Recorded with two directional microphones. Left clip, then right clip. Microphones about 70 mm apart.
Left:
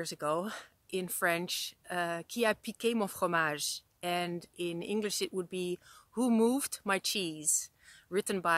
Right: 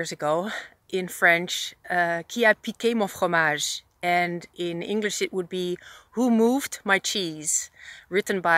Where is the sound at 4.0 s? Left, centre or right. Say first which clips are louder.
Right 12 dB; left.